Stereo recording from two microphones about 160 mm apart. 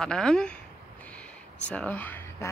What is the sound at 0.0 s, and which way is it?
Speech, 5° left (ahead or behind).